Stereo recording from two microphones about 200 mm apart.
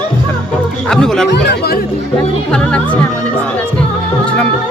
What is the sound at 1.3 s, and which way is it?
Speech, 55° left (ahead or behind).